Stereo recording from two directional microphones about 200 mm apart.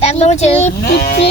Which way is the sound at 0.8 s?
50° left (ahead or behind).